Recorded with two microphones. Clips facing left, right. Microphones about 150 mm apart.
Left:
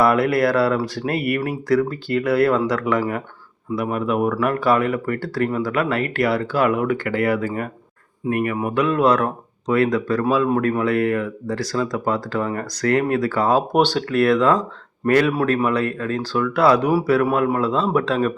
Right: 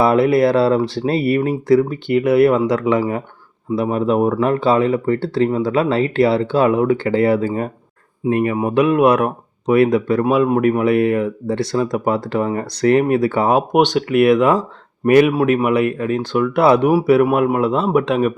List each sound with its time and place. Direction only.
0.0 s speech: 25° right (ahead or behind)